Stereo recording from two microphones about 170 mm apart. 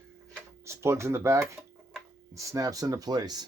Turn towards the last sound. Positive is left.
turn(degrees=-25)  # may be behind; listen again after turning